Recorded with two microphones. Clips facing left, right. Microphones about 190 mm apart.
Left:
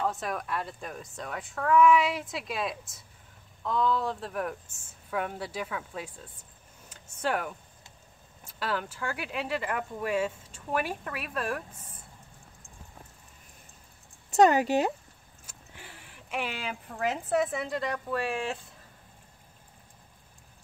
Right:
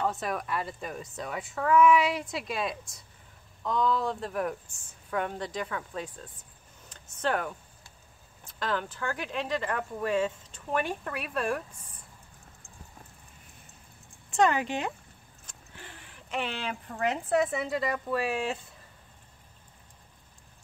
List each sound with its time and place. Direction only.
0.0 s speech: centre (ahead or behind)
6.9 s a sound: 10° left (ahead or behind)
8.5 s speech: 10° left (ahead or behind)
14.3 s speech: 40° left (ahead or behind)
15.4 s speech: 5° left (ahead or behind)